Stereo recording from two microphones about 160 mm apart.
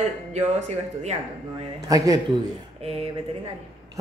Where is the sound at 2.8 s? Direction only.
35° right (ahead or behind).